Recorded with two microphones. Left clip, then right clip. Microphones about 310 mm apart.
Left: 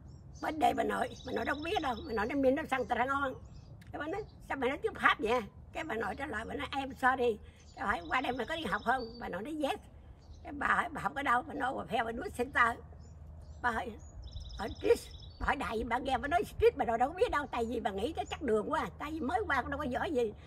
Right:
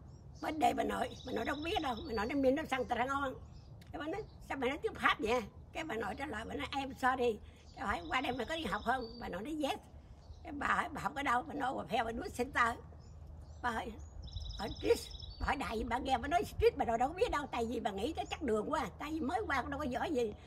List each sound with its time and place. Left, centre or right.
0.4 s a woman's voice: centre
14.3 s a sound: left
14.8 s a woman's voice: centre